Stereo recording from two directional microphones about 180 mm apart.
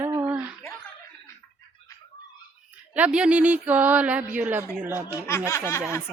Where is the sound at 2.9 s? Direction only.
5° right (ahead or behind).